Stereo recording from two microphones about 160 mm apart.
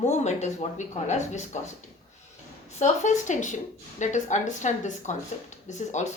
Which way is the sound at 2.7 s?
45° left (ahead or behind).